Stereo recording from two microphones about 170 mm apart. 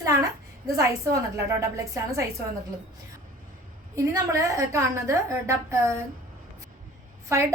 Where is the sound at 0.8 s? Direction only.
20° right (ahead or behind).